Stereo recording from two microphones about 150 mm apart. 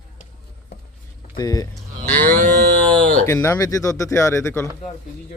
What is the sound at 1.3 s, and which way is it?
Speech, 25° left (ahead or behind).